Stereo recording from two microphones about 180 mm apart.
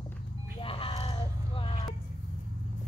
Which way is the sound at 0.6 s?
30° left (ahead or behind).